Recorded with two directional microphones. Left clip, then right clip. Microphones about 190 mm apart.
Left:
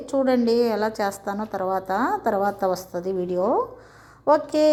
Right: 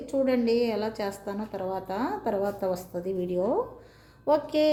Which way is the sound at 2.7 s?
Centre (ahead or behind).